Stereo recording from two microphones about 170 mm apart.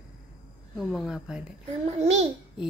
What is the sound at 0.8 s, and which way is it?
Speech, centre (ahead or behind).